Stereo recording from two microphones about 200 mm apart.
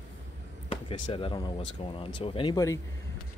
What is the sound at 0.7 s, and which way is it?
Speech, 25° left (ahead or behind).